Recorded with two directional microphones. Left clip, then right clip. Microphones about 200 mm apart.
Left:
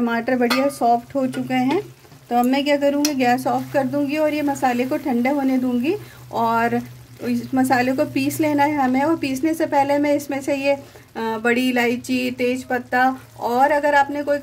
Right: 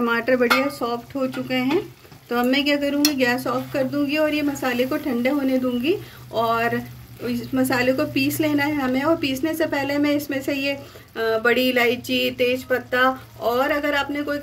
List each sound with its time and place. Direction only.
0.0 s a woman's voice: 35° left (ahead or behind)